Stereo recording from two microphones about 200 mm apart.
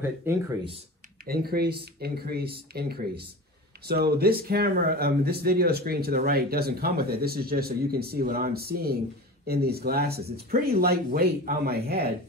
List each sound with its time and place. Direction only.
0.0 s speech: 10° right (ahead or behind)
1.2 s speech: 50° right (ahead or behind)